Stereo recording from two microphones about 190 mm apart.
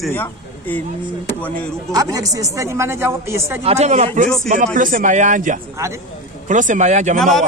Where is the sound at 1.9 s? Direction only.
20° right (ahead or behind).